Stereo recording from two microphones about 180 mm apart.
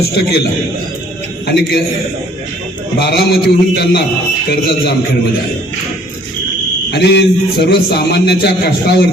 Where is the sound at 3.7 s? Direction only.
60° left (ahead or behind).